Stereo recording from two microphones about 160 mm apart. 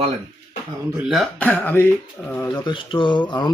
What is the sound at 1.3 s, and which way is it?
Speech, 10° left (ahead or behind).